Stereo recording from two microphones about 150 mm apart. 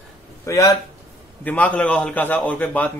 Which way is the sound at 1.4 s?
10° left (ahead or behind).